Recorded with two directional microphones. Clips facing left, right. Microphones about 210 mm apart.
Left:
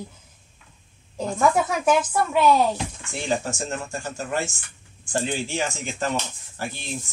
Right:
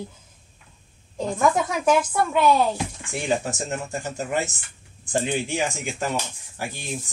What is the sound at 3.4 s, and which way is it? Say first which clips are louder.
Speech: right 1 dB; 15° right (ahead or behind).